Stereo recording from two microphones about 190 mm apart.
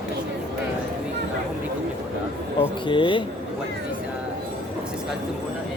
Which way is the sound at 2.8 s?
25° left (ahead or behind).